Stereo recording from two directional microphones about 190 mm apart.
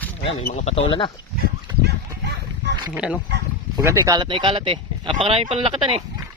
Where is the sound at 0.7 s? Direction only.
25° left (ahead or behind).